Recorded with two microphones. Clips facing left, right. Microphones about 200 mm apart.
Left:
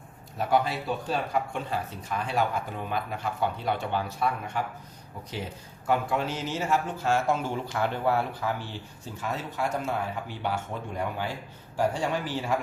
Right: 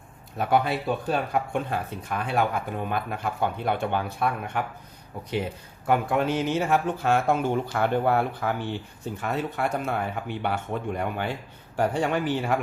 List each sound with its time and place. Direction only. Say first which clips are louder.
0.3 s speech: right 2 dB; 60° right (ahead or behind)
5.9 s speech: right 4 dB; 55° right (ahead or behind)